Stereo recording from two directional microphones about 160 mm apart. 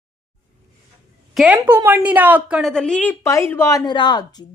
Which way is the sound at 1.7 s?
15° right (ahead or behind).